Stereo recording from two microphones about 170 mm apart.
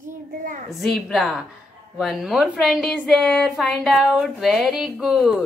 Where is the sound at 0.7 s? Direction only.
Centre (ahead or behind).